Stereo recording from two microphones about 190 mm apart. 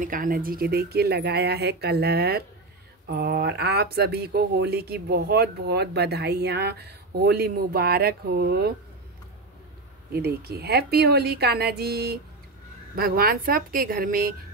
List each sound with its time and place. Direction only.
0.0 s speech: 45° right (ahead or behind)
10.1 s a woman's voice: 55° right (ahead or behind)